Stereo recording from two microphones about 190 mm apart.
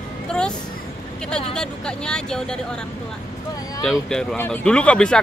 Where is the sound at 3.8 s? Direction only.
5° left (ahead or behind).